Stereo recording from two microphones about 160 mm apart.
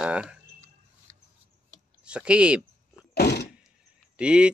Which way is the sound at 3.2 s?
90° left.